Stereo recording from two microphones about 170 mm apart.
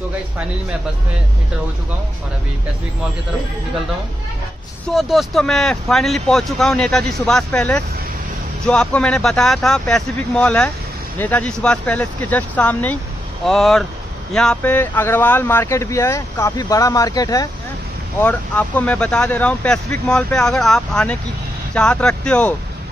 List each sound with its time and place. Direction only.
4.8 s speech: centre (ahead or behind); by 17.5 s 20° left (ahead or behind)
18.2 s speech: 10° left (ahead or behind)